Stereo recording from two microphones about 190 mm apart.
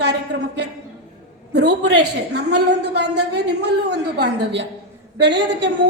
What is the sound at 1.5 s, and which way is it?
A woman's voice, 60° right (ahead or behind).